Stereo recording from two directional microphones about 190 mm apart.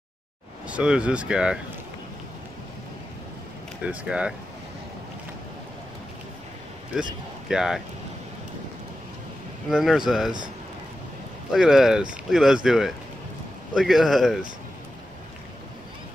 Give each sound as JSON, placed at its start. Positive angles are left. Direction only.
{"t": 0.7, "sound": "speech", "side_deg": -5}
{"t": 3.8, "sound": "speech", "side_deg": -5}
{"t": 6.9, "sound": "speech", "side_deg": -5}
{"t": 9.7, "sound": "speech", "side_deg": 0}
{"t": 11.5, "sound": "speech", "side_deg": 0}